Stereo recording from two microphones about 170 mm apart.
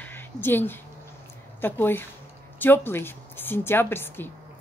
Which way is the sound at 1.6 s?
10° left (ahead or behind).